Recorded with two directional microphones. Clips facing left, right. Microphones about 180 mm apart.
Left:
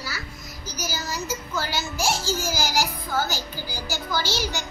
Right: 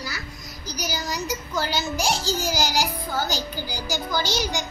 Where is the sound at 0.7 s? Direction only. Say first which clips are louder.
Right 2 dB; 15° right (ahead or behind).